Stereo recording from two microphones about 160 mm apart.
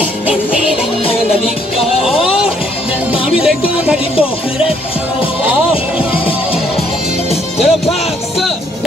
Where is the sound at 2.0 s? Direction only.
5° right (ahead or behind).